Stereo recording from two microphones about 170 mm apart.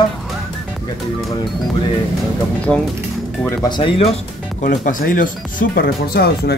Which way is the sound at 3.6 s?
30° left (ahead or behind).